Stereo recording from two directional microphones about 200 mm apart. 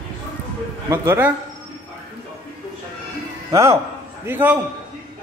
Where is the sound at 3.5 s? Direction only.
15° right (ahead or behind).